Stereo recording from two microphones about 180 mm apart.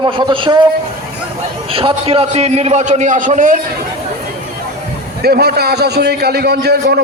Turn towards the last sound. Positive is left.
turn(degrees=-65)  # may be behind; listen again after turning